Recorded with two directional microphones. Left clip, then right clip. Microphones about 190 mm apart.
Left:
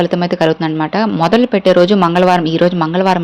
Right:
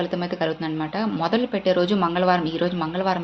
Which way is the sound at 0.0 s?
50° left (ahead or behind).